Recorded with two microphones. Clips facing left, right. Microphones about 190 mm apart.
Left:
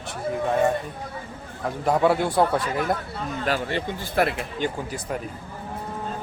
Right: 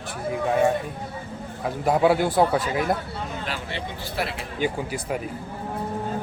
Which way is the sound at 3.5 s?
45° left (ahead or behind).